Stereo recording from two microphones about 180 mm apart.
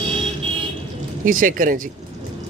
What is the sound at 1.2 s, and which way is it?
Speech, 50° right (ahead or behind).